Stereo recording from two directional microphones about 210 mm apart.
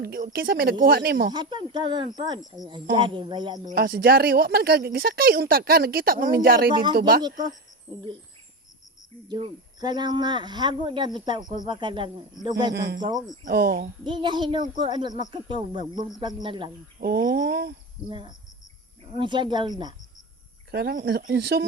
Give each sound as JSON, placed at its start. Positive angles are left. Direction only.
{"t": 0.0, "sound": "speech", "side_deg": -45}
{"t": 1.3, "sound": "speech", "side_deg": -20}
{"t": 3.7, "sound": "speech", "side_deg": -45}
{"t": 7.2, "sound": "speech", "side_deg": -20}
{"t": 9.2, "sound": "speech", "side_deg": -20}
{"t": 12.7, "sound": "speech", "side_deg": -50}
{"t": 14.0, "sound": "speech", "side_deg": -20}
{"t": 17.0, "sound": "speech", "side_deg": -45}
{"t": 18.1, "sound": "speech", "side_deg": -25}
{"t": 20.7, "sound": "speech", "side_deg": -50}